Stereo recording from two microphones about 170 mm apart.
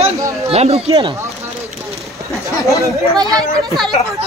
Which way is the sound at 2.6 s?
20° left (ahead or behind).